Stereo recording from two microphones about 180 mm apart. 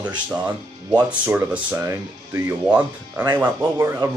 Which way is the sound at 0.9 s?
10° right (ahead or behind).